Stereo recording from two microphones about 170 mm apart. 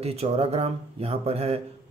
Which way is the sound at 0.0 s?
35° right (ahead or behind).